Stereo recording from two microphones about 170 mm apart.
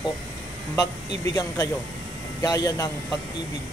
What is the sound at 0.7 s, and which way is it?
Speech, 20° left (ahead or behind).